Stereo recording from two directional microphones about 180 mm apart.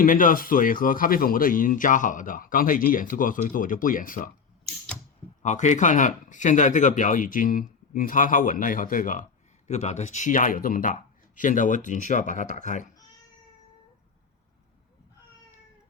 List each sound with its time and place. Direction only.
0.0 s a man's voice: 50° left (ahead or behind)
5.4 s a man's voice: 40° left (ahead or behind)